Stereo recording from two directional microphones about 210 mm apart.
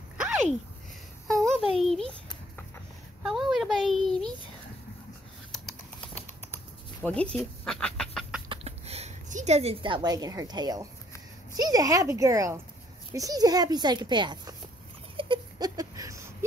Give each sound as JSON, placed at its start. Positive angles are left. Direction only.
{"t": 0.2, "sound": "a sound", "side_deg": -5}
{"t": 1.2, "sound": "a child's voice", "side_deg": 0}
{"t": 3.2, "sound": "a child's voice", "side_deg": 0}
{"t": 5.5, "sound": "typing", "side_deg": 5}
{"t": 8.5, "sound": "a woman's voice", "side_deg": -30}
{"t": 15.1, "sound": "a sound", "side_deg": -25}